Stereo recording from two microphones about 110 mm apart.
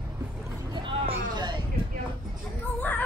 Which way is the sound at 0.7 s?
50° right (ahead or behind).